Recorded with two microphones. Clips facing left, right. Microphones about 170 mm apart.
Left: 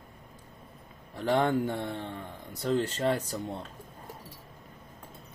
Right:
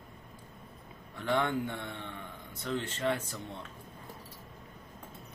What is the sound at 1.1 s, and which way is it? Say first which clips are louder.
A man's voice: left 5 dB; 35° left (ahead or behind).